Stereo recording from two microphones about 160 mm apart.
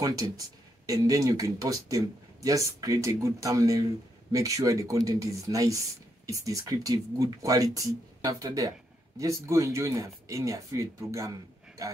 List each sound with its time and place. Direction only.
0.0 s speech: 20° right (ahead or behind)